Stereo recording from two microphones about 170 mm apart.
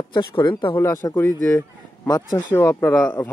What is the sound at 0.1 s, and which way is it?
Speech, 25° left (ahead or behind).